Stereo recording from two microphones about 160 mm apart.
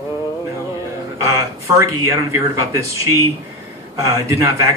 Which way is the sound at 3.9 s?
20° right (ahead or behind).